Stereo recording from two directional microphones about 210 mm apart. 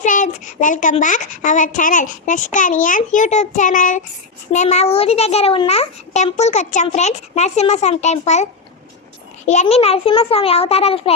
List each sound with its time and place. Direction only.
0.0 s a woman's voice: 35° left (ahead or behind)
9.5 s a child's voice: 30° left (ahead or behind)